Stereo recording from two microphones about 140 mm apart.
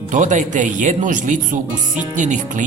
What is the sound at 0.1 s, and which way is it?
Speech, 60° right (ahead or behind).